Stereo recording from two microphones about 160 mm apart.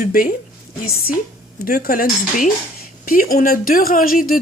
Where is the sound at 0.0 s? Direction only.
65° left (ahead or behind).